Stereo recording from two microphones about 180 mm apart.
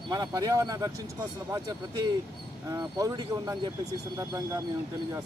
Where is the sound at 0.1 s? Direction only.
20° right (ahead or behind).